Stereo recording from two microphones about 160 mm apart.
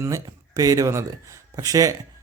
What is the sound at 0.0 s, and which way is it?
Speech, 20° right (ahead or behind).